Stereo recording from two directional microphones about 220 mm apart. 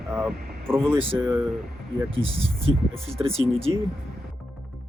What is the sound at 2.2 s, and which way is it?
Speech, 25° right (ahead or behind).